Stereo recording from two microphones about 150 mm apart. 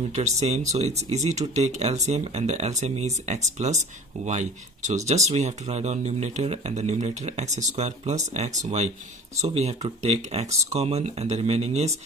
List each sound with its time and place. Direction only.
0.1 s speech: 50° right (ahead or behind)